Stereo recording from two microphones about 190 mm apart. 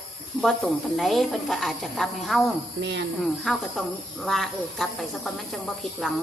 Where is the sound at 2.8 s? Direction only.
65° right (ahead or behind).